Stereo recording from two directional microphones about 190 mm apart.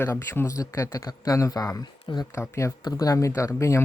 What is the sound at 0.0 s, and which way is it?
Speech, 10° left (ahead or behind).